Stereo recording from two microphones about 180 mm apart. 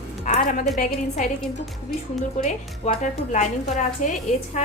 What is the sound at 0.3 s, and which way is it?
Speech, 50° left (ahead or behind).